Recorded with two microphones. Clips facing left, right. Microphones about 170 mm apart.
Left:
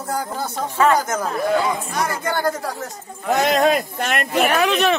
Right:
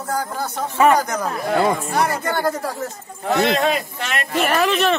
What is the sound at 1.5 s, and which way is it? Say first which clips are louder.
Speech: right 3 dB; 55° right (ahead or behind).